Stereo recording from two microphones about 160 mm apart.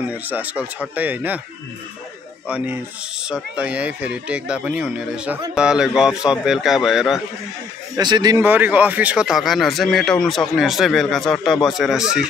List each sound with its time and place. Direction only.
0.0 s speech: 10° right (ahead or behind)
2.4 s speech: 10° right (ahead or behind)
7.9 s speech: 25° right (ahead or behind)
8.4 s speech: 10° right (ahead or behind)